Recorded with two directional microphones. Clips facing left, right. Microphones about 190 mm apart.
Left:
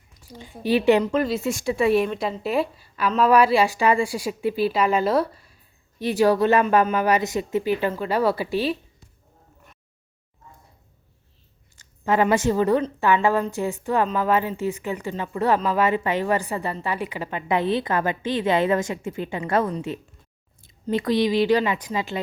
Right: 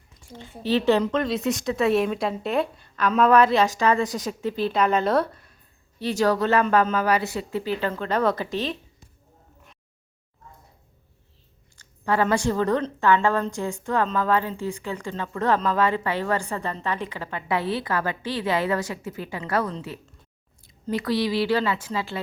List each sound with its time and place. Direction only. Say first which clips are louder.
0.2 s a sound: even; 5° left (ahead or behind)
0.6 s a woman's voice: left 2 dB; 15° left (ahead or behind)
1.0 s a woman's voice: left 1 dB; 5° left (ahead or behind)
11.8 s a woman's voice: left 2 dB; 15° left (ahead or behind)
20.7 s speech: left 3 dB; 25° left (ahead or behind)